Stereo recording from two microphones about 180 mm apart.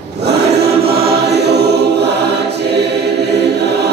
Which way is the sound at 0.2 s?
65° right (ahead or behind).